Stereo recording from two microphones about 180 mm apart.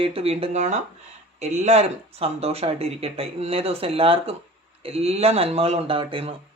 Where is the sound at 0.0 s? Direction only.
30° right (ahead or behind).